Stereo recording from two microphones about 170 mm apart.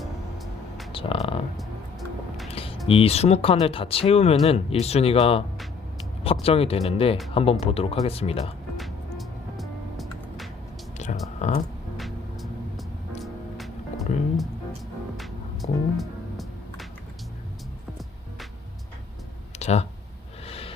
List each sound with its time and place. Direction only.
0.0 s music: centre (ahead or behind)
0.9 s a sound: 35° left (ahead or behind)
1.5 s music: centre (ahead or behind)
2.5 s a sound: 35° left (ahead or behind)
2.8 s speech: 35° left (ahead or behind)
6.4 s speech: 35° left (ahead or behind)
9.1 s music: centre (ahead or behind)
10.9 s music: 45° left (ahead or behind)
11.3 s speech: 45° left (ahead or behind)
11.9 s music: centre (ahead or behind)
19.5 s a sound: 40° left (ahead or behind)
20.4 s gasp: 35° left (ahead or behind)